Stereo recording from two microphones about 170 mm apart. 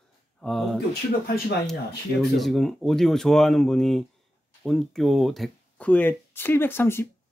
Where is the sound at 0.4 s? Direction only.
Centre (ahead or behind).